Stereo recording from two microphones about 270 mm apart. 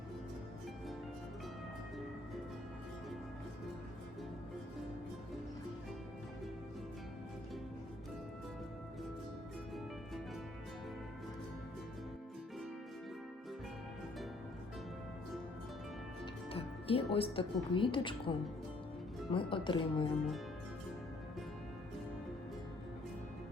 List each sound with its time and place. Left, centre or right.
16.2 s music: left
17.2 s a woman's voice: centre